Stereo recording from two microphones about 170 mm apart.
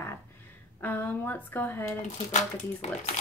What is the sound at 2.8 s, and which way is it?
Speech, 40° left (ahead or behind).